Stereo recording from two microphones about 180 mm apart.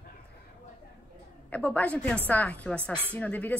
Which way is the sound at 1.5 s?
10° left (ahead or behind).